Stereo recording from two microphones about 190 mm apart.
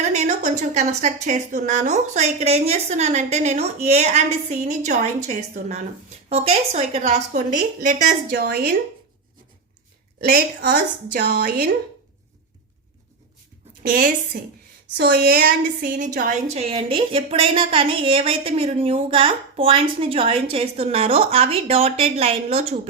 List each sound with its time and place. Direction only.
0.1 s a woman's voice: 35° right (ahead or behind); by 8.7 s 55° right (ahead or behind)
10.2 s a woman's voice: 50° right (ahead or behind)
13.8 s a woman's voice: 45° right (ahead or behind)